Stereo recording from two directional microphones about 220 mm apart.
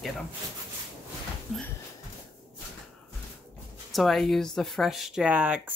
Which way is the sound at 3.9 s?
Centre (ahead or behind).